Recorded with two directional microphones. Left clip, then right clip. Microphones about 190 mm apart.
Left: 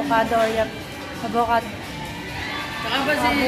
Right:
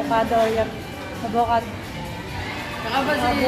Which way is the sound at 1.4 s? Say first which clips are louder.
Even; 20° left (ahead or behind).